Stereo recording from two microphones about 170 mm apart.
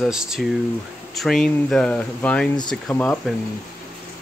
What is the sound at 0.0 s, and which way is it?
Speech, centre (ahead or behind).